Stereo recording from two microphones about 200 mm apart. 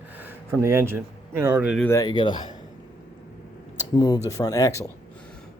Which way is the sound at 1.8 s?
15° left (ahead or behind).